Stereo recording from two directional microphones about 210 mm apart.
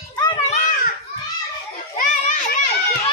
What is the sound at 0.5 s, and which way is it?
Children playing, 35° left (ahead or behind).